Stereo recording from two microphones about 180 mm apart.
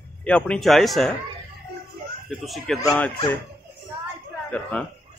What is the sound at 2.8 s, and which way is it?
Speech, 20° left (ahead or behind).